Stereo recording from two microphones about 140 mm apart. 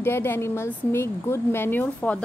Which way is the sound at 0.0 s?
15° left (ahead or behind).